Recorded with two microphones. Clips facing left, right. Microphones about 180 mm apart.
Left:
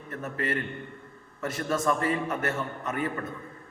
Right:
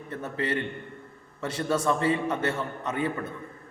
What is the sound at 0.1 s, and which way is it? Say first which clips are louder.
A man's voice: right 1 dB; 25° right (ahead or behind).